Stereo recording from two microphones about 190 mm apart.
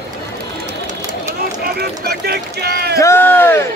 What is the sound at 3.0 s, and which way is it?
Speech, 10° left (ahead or behind).